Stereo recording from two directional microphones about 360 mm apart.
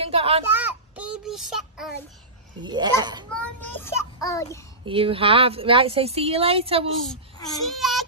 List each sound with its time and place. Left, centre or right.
0.0 s speech: centre
0.5 s child singing: centre
2.6 s speech: centre
3.3 s a child's voice: centre
4.8 s speech: centre
7.1 s a child's voice: centre
7.7 s child singing: centre